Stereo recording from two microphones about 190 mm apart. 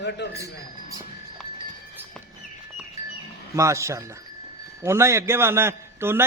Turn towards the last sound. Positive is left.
turn(degrees=-10)  # may be behind; listen again after turning